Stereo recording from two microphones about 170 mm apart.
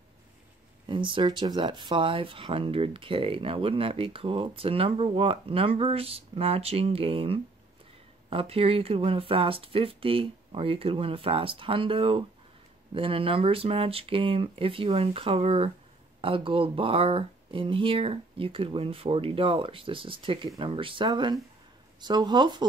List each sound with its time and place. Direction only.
0.8 s speech: 30° right (ahead or behind)